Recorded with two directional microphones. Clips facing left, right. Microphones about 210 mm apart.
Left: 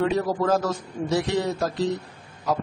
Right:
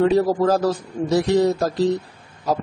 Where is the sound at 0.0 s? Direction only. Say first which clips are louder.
Right 6 dB; 35° right (ahead or behind).